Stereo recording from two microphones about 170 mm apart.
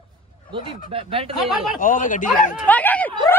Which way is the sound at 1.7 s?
50° left (ahead or behind).